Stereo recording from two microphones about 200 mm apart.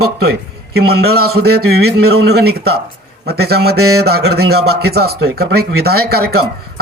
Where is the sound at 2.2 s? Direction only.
50° right (ahead or behind).